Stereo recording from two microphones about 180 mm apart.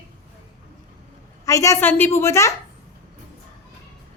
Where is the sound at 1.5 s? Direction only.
15° left (ahead or behind).